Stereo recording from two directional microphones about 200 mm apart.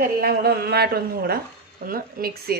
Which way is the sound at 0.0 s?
50° right (ahead or behind).